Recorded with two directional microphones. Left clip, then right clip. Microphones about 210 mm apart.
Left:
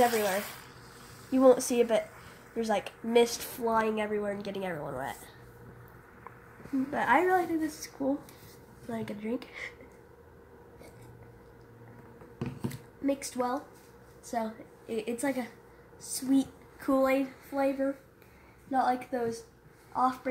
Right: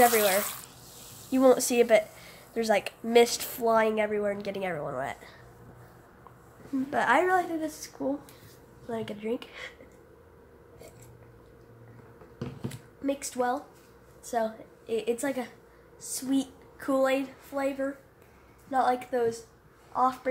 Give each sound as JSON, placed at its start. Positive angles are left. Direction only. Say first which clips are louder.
{"t": 0.0, "sound": "a woman's voice", "louder": "right 4 dB", "side_deg": -15}
{"t": 6.9, "sound": "a woman's voice", "louder": "right 2 dB", "side_deg": -15}
{"t": 12.7, "sound": "a woman's voice", "louder": "even", "side_deg": 0}
{"t": 18.7, "sound": "a woman's voice", "louder": "right 2 dB", "side_deg": -10}